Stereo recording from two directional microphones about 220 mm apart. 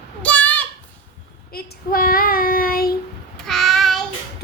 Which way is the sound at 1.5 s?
40° left (ahead or behind).